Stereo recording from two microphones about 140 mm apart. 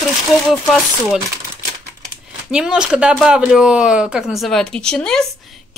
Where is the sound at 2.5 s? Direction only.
5° right (ahead or behind).